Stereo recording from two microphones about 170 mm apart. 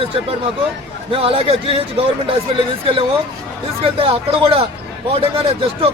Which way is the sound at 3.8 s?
35° right (ahead or behind).